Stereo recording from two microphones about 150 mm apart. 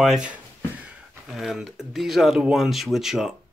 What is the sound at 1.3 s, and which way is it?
Speech, centre (ahead or behind).